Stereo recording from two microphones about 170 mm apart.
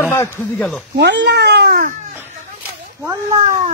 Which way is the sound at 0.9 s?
90° right.